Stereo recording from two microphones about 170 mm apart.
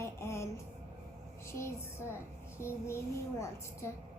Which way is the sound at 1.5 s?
15° left (ahead or behind).